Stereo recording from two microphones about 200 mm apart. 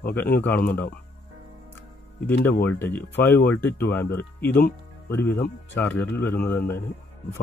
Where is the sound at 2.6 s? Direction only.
10° left (ahead or behind).